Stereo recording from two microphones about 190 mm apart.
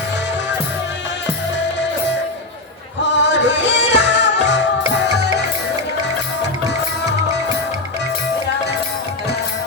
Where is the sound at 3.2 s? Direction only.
65° left (ahead or behind).